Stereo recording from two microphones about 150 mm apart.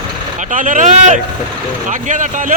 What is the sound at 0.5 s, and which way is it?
Speech, 55° right (ahead or behind).